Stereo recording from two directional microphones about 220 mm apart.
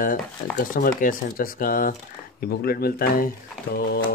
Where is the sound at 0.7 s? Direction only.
40° left (ahead or behind).